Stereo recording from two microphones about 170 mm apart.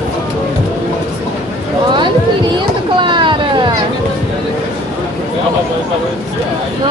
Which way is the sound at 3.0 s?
30° right (ahead or behind).